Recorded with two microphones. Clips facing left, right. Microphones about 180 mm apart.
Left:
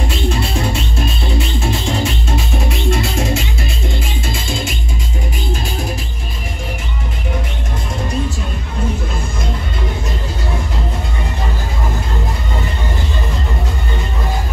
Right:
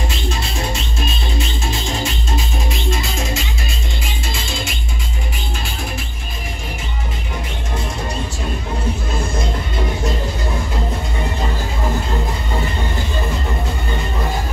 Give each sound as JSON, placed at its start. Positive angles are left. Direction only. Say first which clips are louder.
{"t": 1.7, "sound": "music", "louder": "left 5 dB", "side_deg": 60}